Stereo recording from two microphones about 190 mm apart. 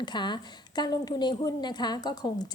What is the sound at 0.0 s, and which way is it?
A woman's voice, 25° left (ahead or behind).